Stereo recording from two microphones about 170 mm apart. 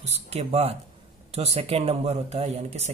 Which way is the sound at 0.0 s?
40° right (ahead or behind).